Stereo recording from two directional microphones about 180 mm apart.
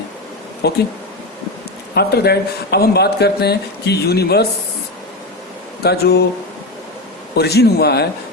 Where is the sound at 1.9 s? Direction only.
60° left (ahead or behind).